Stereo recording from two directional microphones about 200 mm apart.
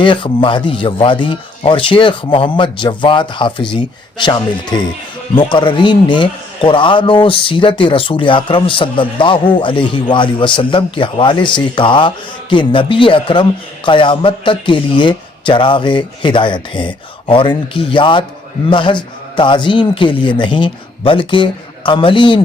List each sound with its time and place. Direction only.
0.0 s a man's voice: 25° left (ahead or behind)